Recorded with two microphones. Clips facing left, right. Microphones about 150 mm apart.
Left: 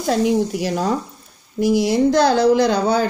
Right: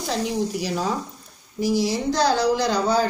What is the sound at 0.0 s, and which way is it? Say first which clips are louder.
Speech: left 7 dB; 55° left (ahead or behind).